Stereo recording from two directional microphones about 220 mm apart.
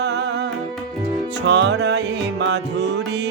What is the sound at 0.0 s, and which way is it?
Music, 50° right (ahead or behind).